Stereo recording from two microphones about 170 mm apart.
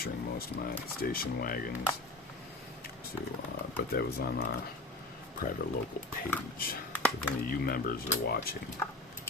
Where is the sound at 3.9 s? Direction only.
65° left (ahead or behind).